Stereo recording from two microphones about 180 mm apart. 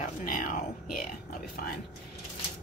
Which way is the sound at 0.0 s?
50° left (ahead or behind).